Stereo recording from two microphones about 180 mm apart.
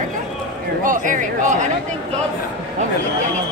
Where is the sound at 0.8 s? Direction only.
45° right (ahead or behind).